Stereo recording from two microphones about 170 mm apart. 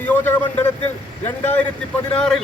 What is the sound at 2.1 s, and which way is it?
Speech, 5° left (ahead or behind).